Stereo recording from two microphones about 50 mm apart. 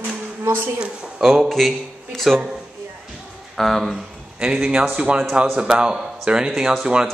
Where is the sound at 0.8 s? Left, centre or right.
Centre.